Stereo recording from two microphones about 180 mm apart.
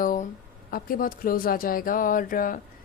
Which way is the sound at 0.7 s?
50° left (ahead or behind).